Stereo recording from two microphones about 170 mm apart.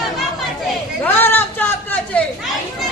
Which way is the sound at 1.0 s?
10° left (ahead or behind).